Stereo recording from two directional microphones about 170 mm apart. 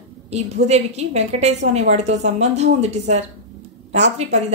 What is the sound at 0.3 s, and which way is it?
Speech, 40° right (ahead or behind).